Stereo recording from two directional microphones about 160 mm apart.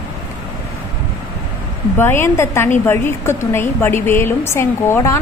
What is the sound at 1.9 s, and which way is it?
A woman's voice, 15° left (ahead or behind).